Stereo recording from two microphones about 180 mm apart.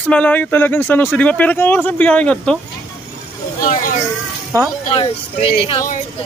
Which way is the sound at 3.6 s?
45° left (ahead or behind).